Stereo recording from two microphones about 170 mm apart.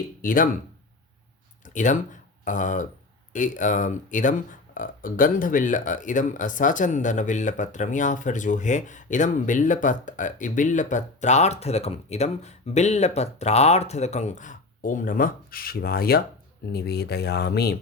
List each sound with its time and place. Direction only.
0.2 s speech: 55° left (ahead or behind)
1.6 s a sound: 50° left (ahead or behind)
2.4 s speech: 50° left (ahead or behind); by 17.7 s 70° left (ahead or behind)